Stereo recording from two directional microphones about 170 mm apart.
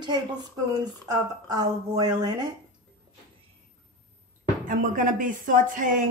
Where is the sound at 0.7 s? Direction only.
25° right (ahead or behind).